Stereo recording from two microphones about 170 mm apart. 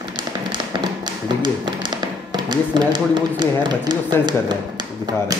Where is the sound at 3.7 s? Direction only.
25° right (ahead or behind).